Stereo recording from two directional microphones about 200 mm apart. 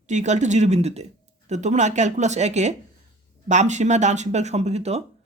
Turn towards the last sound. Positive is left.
turn(degrees=-35)  # may be behind; listen again after turning